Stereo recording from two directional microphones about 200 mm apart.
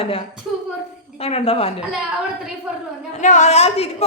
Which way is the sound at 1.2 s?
30° left (ahead or behind).